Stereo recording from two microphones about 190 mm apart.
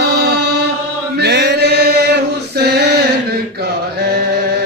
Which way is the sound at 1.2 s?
60° right (ahead or behind).